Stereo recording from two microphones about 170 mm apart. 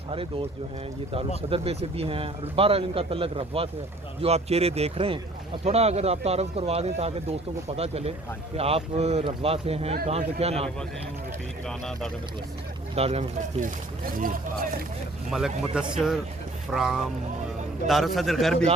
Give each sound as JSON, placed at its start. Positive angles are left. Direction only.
{"t": 1.4, "sound": "a man's voice", "side_deg": -35}
{"t": 11.6, "sound": "a man's voice", "side_deg": 5}
{"t": 13.0, "sound": "a man's voice", "side_deg": -35}
{"t": 13.7, "sound": "speech", "side_deg": -55}
{"t": 15.3, "sound": "a man's voice", "side_deg": 0}